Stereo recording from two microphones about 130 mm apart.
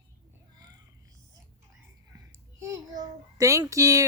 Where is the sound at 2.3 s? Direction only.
25° right (ahead or behind).